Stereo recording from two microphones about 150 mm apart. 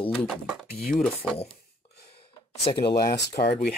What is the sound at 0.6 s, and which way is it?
Speech, 90° left.